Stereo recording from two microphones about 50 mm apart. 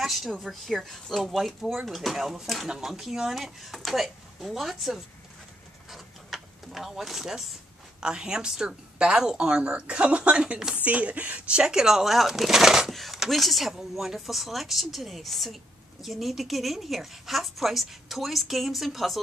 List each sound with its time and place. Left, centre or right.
0.0 s a woman's voice: centre
5.9 s a sound: centre
8.0 s a woman's voice: centre